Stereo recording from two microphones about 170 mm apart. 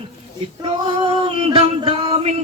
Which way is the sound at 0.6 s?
30° right (ahead or behind).